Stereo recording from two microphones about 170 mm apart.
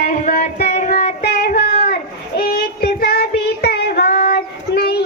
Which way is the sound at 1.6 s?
65° left (ahead or behind).